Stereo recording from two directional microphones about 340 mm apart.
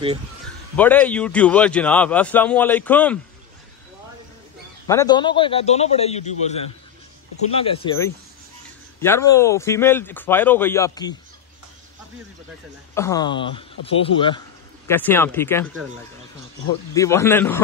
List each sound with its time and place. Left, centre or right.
0.7 s a man's voice: centre
4.8 s speech: centre
7.5 s speech: centre
12.9 s speech: centre
16.9 s speech: centre